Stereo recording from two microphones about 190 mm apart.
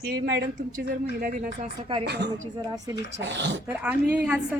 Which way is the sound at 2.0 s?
60° right (ahead or behind).